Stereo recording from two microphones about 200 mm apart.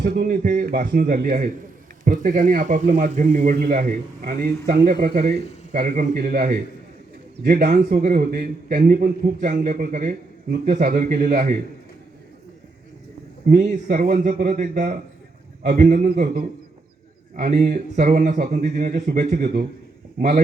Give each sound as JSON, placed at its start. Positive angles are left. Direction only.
{"t": 0.0, "sound": "a man's voice", "side_deg": -45}
{"t": 13.5, "sound": "a man's voice", "side_deg": -40}